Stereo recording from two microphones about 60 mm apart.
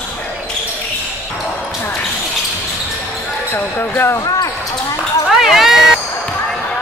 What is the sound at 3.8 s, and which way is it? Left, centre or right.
Speech, left.